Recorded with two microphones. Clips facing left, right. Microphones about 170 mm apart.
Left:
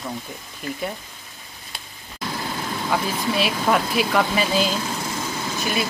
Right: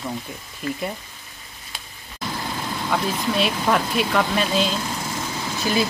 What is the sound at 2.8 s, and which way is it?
Speech, 5° left (ahead or behind).